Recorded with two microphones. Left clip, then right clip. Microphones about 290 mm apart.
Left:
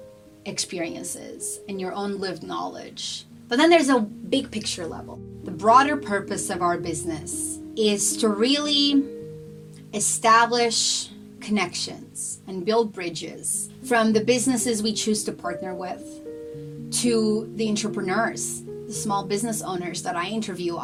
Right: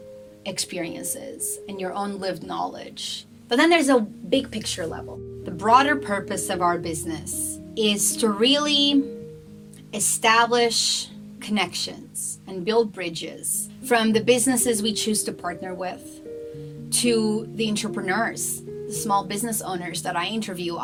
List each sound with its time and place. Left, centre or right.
0.4 s speech: right
5.5 s speech: right